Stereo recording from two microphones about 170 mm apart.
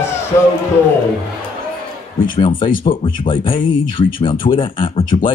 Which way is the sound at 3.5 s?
50° left (ahead or behind).